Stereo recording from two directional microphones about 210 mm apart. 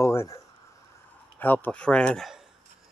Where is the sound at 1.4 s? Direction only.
10° left (ahead or behind).